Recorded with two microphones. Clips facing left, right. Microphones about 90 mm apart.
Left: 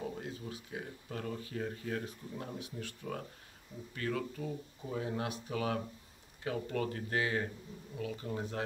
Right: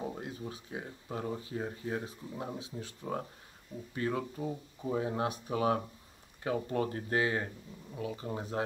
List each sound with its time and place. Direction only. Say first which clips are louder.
0.0 s speech: right 2 dB; 30° right (ahead or behind)